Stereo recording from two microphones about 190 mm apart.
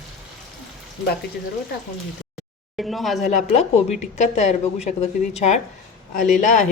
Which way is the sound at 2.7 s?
Centre (ahead or behind).